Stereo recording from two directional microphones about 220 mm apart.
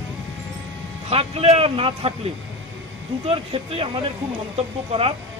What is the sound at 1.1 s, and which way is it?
A man's voice, 25° right (ahead or behind).